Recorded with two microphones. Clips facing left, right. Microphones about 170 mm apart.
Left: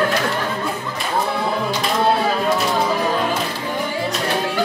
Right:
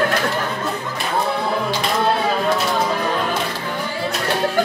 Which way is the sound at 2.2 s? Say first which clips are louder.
Even; centre (ahead or behind).